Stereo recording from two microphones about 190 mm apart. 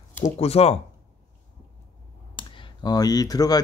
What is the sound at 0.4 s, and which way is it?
Speech, 30° left (ahead or behind).